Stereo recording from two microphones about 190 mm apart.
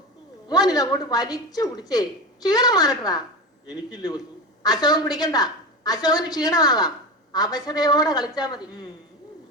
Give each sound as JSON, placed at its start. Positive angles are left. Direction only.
{"t": 0.4, "sound": "speech", "side_deg": 20}